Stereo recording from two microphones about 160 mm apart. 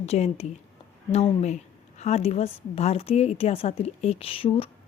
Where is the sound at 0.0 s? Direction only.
40° left (ahead or behind).